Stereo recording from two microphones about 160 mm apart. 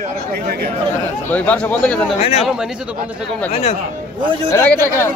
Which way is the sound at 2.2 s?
40° left (ahead or behind).